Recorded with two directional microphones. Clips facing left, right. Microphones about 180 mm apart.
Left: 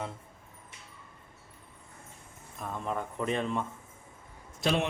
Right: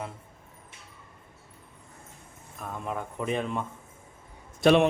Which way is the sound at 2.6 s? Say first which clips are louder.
Even; 5° right (ahead or behind).